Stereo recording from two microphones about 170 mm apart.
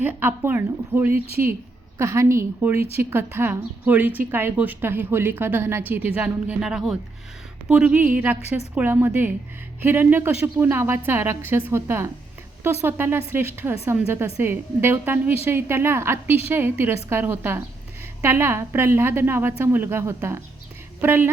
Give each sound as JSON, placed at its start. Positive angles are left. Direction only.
{"t": 0.0, "sound": "a woman's voice", "side_deg": -10}
{"t": 8.4, "sound": "a woman's voice", "side_deg": 40}
{"t": 8.7, "sound": "a woman's voice", "side_deg": -15}